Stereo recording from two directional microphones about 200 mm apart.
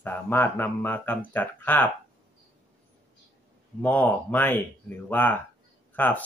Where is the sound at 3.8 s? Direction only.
5° left (ahead or behind).